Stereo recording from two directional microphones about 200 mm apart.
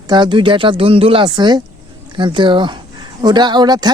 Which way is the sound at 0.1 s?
25° right (ahead or behind).